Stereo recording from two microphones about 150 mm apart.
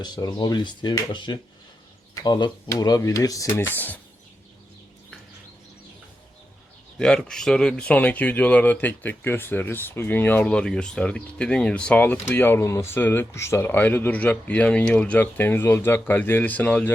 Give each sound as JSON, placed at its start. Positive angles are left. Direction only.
{"t": 0.0, "sound": "speech", "side_deg": 30}
{"t": 7.0, "sound": "speech", "side_deg": 5}